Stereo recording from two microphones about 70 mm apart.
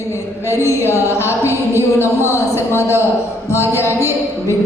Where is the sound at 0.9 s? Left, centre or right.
Left.